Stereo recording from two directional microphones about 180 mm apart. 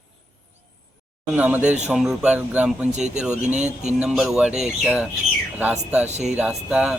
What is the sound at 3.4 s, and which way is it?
Speech, 40° right (ahead or behind).